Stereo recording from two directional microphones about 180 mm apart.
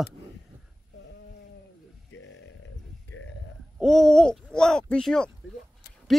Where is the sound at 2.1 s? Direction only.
90° left.